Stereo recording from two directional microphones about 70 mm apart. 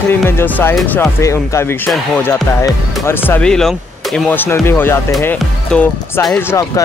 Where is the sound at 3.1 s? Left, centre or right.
Left.